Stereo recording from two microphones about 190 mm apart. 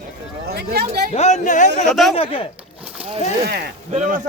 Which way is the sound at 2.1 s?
30° left (ahead or behind).